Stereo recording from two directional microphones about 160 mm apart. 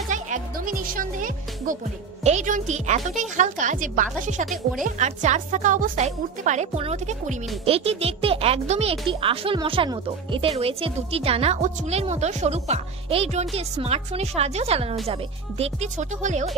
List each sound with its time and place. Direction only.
0.1 s music: 55° right (ahead or behind)
2.2 s a woman's voice: 50° right (ahead or behind)